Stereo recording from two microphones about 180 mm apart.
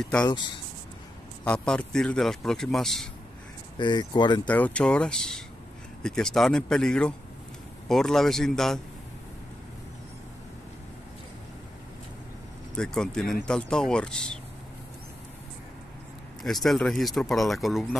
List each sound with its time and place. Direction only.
0.0 s a man's voice: 5° left (ahead or behind)
1.4 s a man's voice: 5° left (ahead or behind)
3.7 s speech: 25° left (ahead or behind)
4.5 s a man's voice: 5° left (ahead or behind)
12.7 s a man's voice: 5° left (ahead or behind)
16.4 s a man's voice: centre (ahead or behind)